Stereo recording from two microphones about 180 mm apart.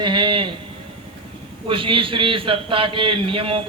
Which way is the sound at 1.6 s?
30° right (ahead or behind).